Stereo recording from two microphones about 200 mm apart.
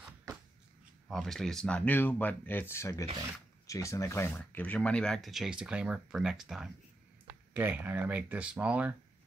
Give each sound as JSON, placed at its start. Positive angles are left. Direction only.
{"t": 1.0, "sound": "speech", "side_deg": 0}